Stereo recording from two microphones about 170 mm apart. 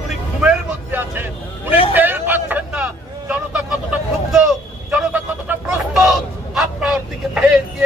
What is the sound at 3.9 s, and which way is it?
Vehicle, 5° right (ahead or behind).